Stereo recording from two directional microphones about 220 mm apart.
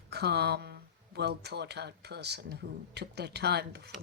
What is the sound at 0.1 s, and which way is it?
Speech, 50° right (ahead or behind).